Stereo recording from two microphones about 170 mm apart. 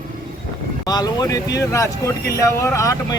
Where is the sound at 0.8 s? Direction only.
25° left (ahead or behind).